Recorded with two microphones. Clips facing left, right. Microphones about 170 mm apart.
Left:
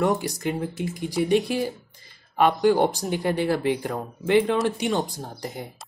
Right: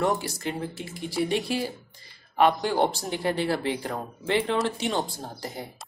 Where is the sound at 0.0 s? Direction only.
15° left (ahead or behind).